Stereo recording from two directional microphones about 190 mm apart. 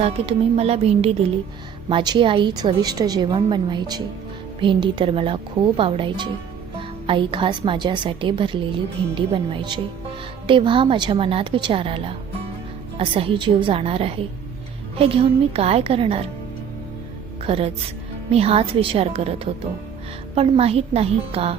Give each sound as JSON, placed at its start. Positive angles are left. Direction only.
{"t": 0.0, "sound": "a woman's voice", "side_deg": -35}
{"t": 17.4, "sound": "a woman's voice", "side_deg": -30}